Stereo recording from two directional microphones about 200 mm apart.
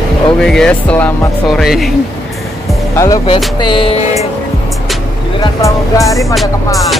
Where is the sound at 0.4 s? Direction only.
Centre (ahead or behind).